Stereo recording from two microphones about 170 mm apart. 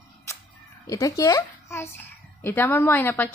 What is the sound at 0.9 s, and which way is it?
A child's voice, 20° left (ahead or behind).